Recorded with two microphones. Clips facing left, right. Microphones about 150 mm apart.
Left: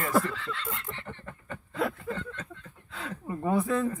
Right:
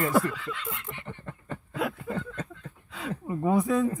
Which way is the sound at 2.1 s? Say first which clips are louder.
Right 3 dB; 5° right (ahead or behind).